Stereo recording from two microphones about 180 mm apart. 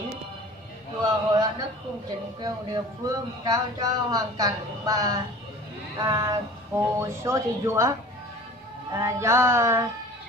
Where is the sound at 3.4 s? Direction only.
20° right (ahead or behind).